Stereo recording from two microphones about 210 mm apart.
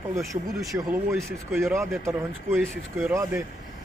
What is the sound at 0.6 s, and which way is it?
Speech, 15° right (ahead or behind).